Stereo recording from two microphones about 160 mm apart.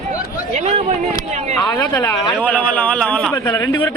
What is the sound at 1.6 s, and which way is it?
A man's voice, 20° left (ahead or behind).